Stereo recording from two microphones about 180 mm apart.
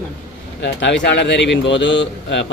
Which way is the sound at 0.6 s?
80° left.